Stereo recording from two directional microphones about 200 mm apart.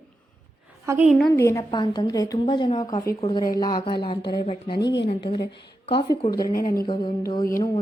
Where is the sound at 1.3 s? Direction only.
15° left (ahead or behind).